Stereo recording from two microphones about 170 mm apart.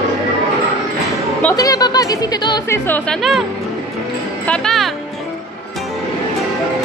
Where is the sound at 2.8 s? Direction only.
10° left (ahead or behind).